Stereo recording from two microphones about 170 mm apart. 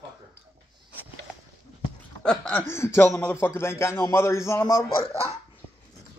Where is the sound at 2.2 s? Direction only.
5° left (ahead or behind).